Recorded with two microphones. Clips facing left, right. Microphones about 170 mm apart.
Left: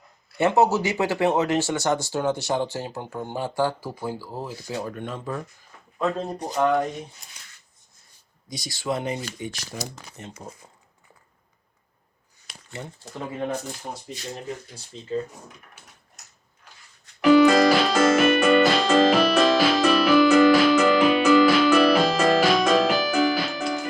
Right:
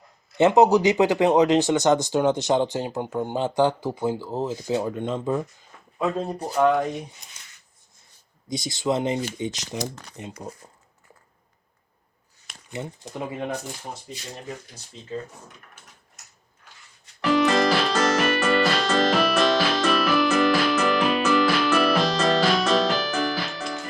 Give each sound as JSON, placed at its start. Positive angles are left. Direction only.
{"t": 0.3, "sound": "speech", "side_deg": -20}
{"t": 6.0, "sound": "speech", "side_deg": -5}
{"t": 8.4, "sound": "speech", "side_deg": -20}
{"t": 9.9, "sound": "speech", "side_deg": 5}
{"t": 10.6, "sound": "crumpling", "side_deg": -5}
{"t": 12.7, "sound": "speech", "side_deg": -20}
{"t": 17.2, "sound": "keyboard", "side_deg": 10}